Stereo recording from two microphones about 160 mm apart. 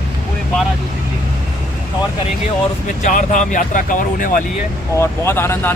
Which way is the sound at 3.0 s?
55° left (ahead or behind).